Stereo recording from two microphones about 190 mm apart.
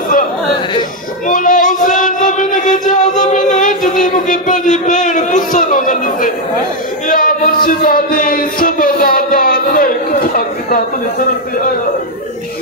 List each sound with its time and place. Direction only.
1.2 s child singing: 45° left (ahead or behind)
7.1 s music: 45° left (ahead or behind)